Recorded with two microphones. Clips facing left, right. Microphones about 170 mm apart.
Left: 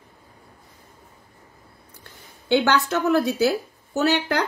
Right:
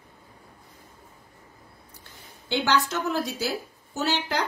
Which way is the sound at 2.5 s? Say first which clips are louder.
Left 5 dB; 60° left (ahead or behind).